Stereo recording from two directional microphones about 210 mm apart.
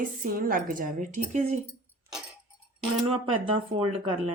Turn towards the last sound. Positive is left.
turn(degrees=-25)  # may be behind; listen again after turning